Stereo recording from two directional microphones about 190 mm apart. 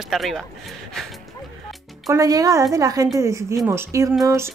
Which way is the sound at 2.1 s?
20° right (ahead or behind).